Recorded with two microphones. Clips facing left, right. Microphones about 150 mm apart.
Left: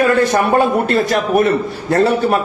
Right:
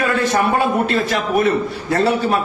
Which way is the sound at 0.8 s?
45° left (ahead or behind).